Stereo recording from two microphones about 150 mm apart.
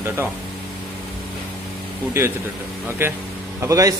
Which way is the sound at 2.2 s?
15° right (ahead or behind).